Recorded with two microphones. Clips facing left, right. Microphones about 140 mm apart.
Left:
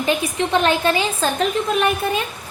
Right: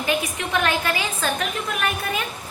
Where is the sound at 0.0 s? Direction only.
30° left (ahead or behind).